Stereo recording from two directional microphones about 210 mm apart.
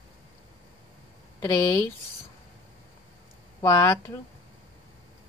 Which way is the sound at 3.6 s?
15° left (ahead or behind).